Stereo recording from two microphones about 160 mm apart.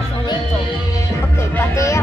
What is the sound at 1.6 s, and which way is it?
Music, 20° left (ahead or behind).